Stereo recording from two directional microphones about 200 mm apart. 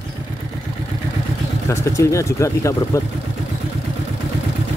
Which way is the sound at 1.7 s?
15° left (ahead or behind).